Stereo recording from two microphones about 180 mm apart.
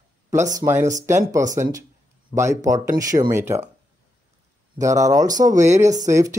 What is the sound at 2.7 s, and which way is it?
Speech, 20° right (ahead or behind).